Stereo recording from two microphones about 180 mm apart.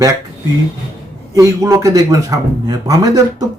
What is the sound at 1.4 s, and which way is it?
Speech, 15° right (ahead or behind).